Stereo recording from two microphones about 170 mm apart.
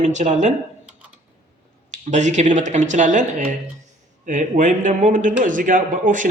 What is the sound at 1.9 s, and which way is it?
A man's voice, 45° right (ahead or behind).